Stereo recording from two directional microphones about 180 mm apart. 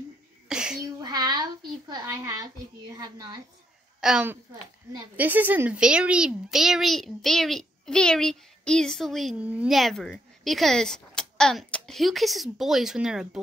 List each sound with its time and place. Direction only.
0.5 s a sound: 5° right (ahead or behind)
1.0 s child singing: 20° right (ahead or behind)
1.9 s a child's voice: 20° right (ahead or behind)
4.0 s a woman's voice: 5° right (ahead or behind)